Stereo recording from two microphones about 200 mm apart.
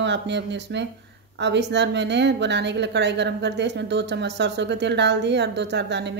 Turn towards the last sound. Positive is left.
turn(degrees=-60)  # may be behind; listen again after turning